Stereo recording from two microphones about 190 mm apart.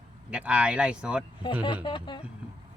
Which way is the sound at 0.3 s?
5° right (ahead or behind).